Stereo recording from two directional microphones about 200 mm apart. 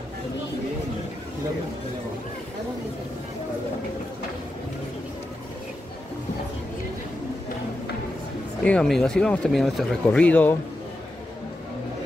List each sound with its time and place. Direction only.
8.6 s speech: 5° left (ahead or behind)